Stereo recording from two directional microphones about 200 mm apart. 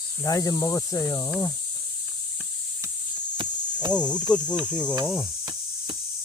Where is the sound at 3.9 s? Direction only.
5° left (ahead or behind).